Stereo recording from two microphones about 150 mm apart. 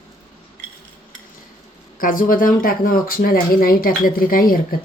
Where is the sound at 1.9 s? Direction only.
65° left (ahead or behind).